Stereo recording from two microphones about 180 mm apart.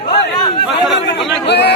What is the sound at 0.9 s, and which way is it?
Speech, 75° left (ahead or behind).